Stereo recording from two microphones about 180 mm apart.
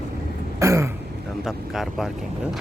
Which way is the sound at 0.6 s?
15° right (ahead or behind).